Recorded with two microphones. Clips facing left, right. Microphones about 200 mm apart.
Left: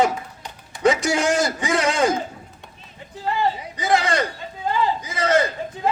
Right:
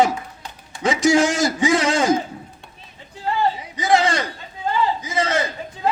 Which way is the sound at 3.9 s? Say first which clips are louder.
Right 2 dB; 60° left (ahead or behind).